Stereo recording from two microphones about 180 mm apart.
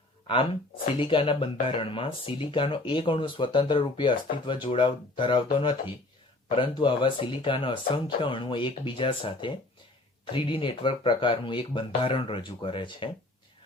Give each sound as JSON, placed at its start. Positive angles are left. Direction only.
{"t": 0.9, "sound": "speech", "side_deg": 30}